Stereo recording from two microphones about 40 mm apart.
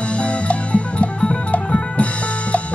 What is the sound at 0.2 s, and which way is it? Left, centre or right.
Music, left.